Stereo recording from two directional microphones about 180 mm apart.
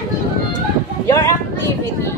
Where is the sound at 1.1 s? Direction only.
15° left (ahead or behind).